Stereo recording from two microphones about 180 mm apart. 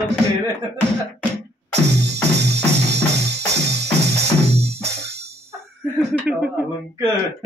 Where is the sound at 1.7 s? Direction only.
75° right (ahead or behind).